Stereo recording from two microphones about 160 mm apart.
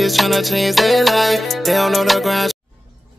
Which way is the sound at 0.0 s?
Centre (ahead or behind).